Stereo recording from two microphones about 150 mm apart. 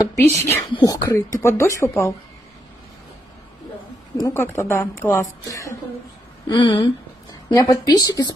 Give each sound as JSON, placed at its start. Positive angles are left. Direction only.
{"t": 0.0, "sound": "speech", "side_deg": 15}
{"t": 4.3, "sound": "speech", "side_deg": 15}
{"t": 6.5, "sound": "speech", "side_deg": 30}